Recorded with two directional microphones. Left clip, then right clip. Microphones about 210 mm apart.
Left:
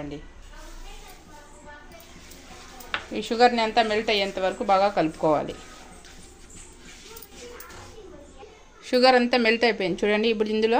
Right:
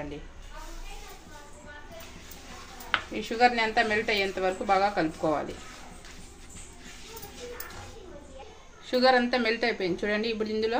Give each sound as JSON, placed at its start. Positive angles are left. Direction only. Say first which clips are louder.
{"t": 3.2, "sound": "a woman's voice", "louder": "left 5 dB", "side_deg": 30}
{"t": 8.8, "sound": "a woman's voice", "louder": "left 4 dB", "side_deg": 45}